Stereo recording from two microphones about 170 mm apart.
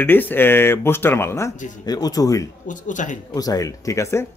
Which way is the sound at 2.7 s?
50° left (ahead or behind).